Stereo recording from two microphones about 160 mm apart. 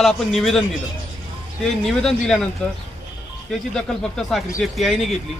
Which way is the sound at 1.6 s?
Centre (ahead or behind).